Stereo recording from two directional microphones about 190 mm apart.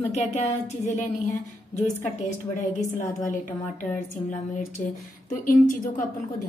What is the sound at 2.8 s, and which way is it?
Speech, 40° left (ahead or behind).